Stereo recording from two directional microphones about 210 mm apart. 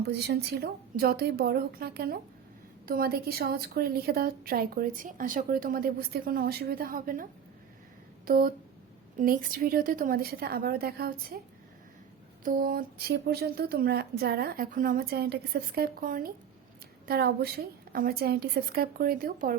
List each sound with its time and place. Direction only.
0.0 s a woman's voice: 50° right (ahead or behind)
8.3 s a woman's voice: 45° right (ahead or behind)
12.5 s a woman's voice: 45° right (ahead or behind)